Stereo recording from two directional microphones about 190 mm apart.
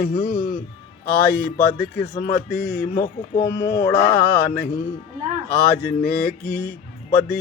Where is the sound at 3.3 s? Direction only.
30° left (ahead or behind).